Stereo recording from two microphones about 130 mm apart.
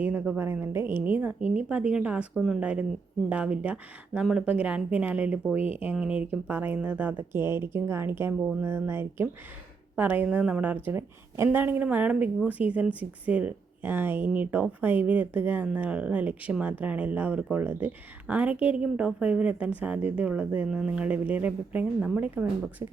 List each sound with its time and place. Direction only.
0.0 s a woman's voice: 10° right (ahead or behind)